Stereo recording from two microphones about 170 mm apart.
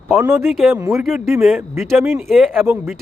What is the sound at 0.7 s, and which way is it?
Speech, 15° right (ahead or behind).